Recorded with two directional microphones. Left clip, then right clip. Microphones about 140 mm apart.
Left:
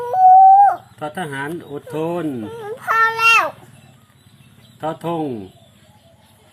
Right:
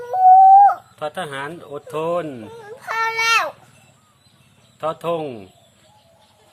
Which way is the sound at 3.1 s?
10° right (ahead or behind).